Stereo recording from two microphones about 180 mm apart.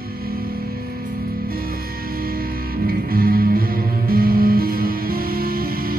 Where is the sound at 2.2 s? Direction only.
55° right (ahead or behind).